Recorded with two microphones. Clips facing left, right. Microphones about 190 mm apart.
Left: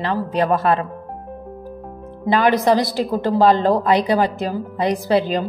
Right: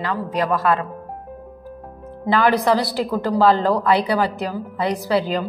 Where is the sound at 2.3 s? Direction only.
20° left (ahead or behind).